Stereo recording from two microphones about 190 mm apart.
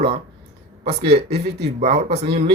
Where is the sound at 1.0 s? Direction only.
60° right (ahead or behind).